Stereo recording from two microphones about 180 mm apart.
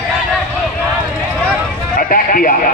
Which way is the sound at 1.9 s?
50° left (ahead or behind).